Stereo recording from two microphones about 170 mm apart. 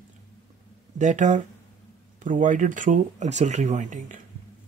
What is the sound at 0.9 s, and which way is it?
Speech, 45° right (ahead or behind).